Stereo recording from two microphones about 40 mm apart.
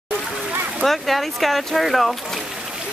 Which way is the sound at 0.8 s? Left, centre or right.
Centre.